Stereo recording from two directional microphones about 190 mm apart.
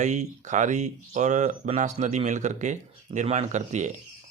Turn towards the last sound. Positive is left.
turn(degrees=-40)  # may be behind; listen again after turning